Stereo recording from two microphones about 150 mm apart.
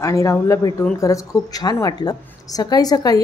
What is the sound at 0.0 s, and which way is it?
A woman's voice, 20° left (ahead or behind).